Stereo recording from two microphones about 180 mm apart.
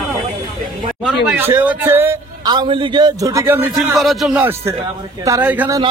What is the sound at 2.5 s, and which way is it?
A man's voice, 25° right (ahead or behind).